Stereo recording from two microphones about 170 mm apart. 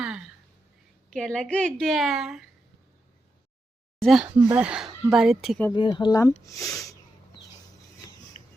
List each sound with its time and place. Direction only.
1.1 s speech: 5° left (ahead or behind)
4.0 s speech: 5° right (ahead or behind)
5.7 s speech: 25° left (ahead or behind)
8.0 s a sound: 15° left (ahead or behind)